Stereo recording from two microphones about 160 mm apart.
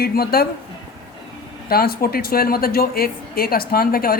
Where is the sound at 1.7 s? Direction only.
70° left (ahead or behind).